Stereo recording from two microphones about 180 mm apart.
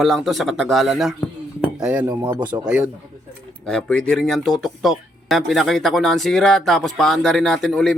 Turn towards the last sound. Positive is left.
turn(degrees=5)  # may be behind; listen again after turning